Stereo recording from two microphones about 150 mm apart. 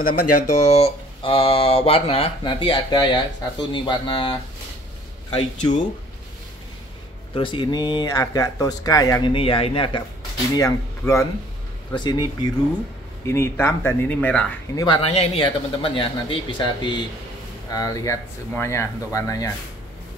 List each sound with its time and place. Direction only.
0.0 s speech: 50° left (ahead or behind); by 4.4 s 30° left (ahead or behind)
5.3 s speech: 55° left (ahead or behind)
7.3 s speech: 35° left (ahead or behind)
9.3 s speech: 35° left (ahead or behind)
10.5 s speech: 20° left (ahead or behind)
13.2 s speech: 15° left (ahead or behind)
15.0 s speech: 40° left (ahead or behind); by 19.5 s 20° left (ahead or behind)